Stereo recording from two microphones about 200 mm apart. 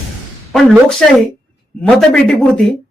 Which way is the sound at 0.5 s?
Centre (ahead or behind).